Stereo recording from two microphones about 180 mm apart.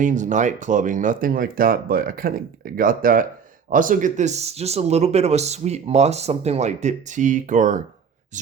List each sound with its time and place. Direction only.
0.0 s speech: 45° right (ahead or behind)